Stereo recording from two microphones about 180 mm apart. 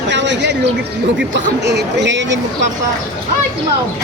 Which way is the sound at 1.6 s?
70° right (ahead or behind).